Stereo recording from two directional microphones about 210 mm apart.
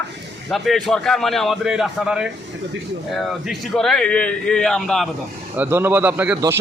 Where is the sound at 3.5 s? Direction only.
Centre (ahead or behind).